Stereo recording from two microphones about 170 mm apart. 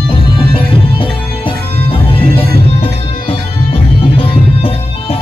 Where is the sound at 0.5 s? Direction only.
30° left (ahead or behind).